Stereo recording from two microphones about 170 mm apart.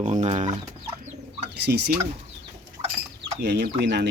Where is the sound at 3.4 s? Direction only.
75° right (ahead or behind).